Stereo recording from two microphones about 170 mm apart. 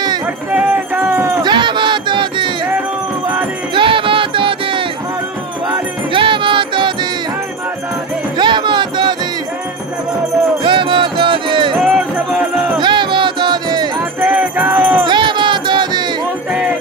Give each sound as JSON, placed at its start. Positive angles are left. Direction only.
{"t": 0.5, "sound": "music", "side_deg": -5}
{"t": 1.4, "sound": "music", "side_deg": -25}
{"t": 3.7, "sound": "music", "side_deg": -30}
{"t": 8.4, "sound": "music", "side_deg": -25}
{"t": 10.6, "sound": "a sound", "side_deg": -30}
{"t": 11.8, "sound": "music", "side_deg": -5}
{"t": 12.7, "sound": "music", "side_deg": -30}
{"t": 14.2, "sound": "music", "side_deg": -10}
{"t": 15.0, "sound": "music", "side_deg": -25}